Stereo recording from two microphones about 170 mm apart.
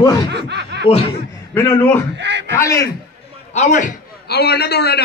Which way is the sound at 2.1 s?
90° right.